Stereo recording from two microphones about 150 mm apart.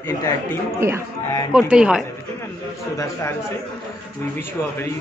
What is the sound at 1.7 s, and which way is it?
Speech, 5° right (ahead or behind).